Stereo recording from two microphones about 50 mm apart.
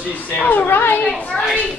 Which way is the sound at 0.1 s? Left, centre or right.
Left.